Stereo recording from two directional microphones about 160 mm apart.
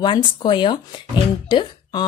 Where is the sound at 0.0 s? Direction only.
30° left (ahead or behind).